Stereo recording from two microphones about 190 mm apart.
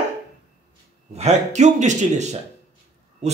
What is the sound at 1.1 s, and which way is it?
Speech, 35° right (ahead or behind).